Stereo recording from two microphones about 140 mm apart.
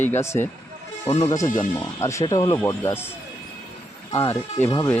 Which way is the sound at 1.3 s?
25° left (ahead or behind).